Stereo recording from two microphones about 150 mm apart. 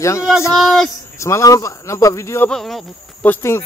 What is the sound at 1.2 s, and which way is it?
Speech, 20° left (ahead or behind).